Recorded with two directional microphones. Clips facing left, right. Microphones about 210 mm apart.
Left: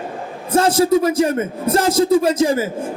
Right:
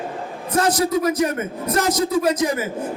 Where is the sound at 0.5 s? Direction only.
30° left (ahead or behind).